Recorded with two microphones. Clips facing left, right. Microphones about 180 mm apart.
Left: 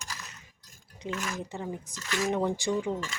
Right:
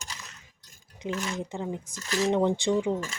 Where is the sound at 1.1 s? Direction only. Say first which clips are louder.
Right 3 dB; 30° right (ahead or behind).